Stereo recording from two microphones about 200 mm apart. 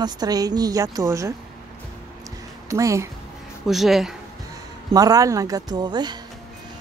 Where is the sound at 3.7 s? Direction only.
Centre (ahead or behind).